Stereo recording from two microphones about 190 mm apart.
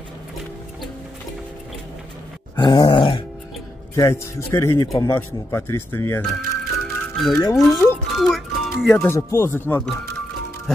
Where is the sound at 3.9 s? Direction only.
15° left (ahead or behind).